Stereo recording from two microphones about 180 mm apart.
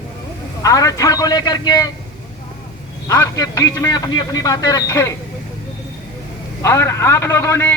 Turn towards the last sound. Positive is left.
turn(degrees=15)  # may be behind; listen again after turning